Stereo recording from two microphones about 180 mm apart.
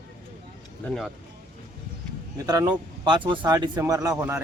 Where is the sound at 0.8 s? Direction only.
Centre (ahead or behind).